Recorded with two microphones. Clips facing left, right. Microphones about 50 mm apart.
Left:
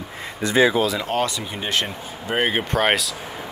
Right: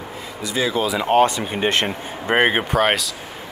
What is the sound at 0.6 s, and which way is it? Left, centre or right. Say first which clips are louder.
Speech: left 6 dB; left.